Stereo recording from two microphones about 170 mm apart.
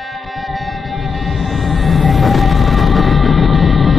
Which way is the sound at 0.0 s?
Centre (ahead or behind).